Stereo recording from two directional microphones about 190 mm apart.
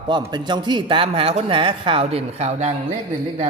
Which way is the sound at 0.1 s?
20° right (ahead or behind).